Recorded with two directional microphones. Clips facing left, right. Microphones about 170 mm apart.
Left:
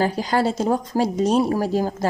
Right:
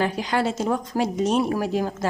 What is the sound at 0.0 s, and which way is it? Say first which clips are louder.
A woman's voice: left 3 dB; 35° left (ahead or behind).